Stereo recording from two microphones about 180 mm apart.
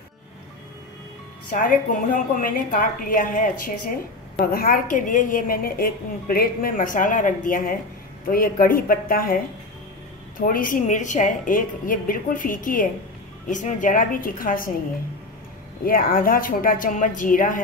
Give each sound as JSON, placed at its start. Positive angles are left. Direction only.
{"t": 1.5, "sound": "a woman's voice", "side_deg": 50}
{"t": 15.8, "sound": "a woman's voice", "side_deg": 55}